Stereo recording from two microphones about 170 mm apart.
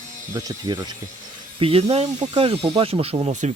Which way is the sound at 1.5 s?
35° right (ahead or behind).